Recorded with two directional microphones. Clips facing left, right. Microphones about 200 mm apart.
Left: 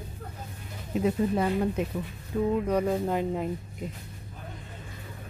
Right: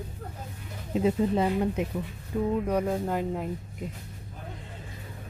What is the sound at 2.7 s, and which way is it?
Speech, 5° right (ahead or behind).